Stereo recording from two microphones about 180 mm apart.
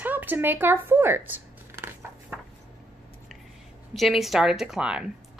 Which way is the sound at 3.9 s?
Centre (ahead or behind).